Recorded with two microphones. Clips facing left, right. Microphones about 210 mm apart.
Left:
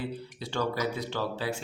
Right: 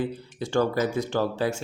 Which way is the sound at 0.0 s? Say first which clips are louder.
Right 6 dB; 50° right (ahead or behind).